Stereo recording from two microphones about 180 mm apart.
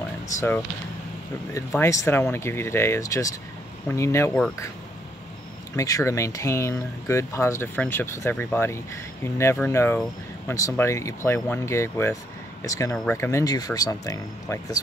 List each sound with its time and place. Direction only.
1.5 s speech: 15° left (ahead or behind)
5.8 s speech: 15° left (ahead or behind)